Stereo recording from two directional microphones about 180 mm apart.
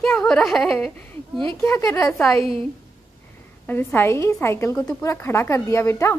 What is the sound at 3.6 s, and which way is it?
A woman's voice, 10° left (ahead or behind).